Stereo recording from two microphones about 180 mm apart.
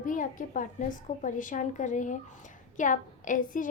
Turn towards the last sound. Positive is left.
turn(degrees=45)  # may be behind; listen again after turning